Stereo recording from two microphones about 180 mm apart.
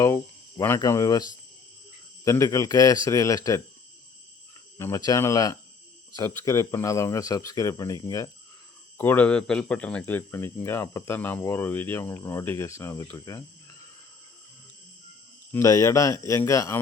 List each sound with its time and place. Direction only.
0.0 s speech: 15° left (ahead or behind)
4.8 s speech: 20° left (ahead or behind)
15.5 s speech: 20° left (ahead or behind)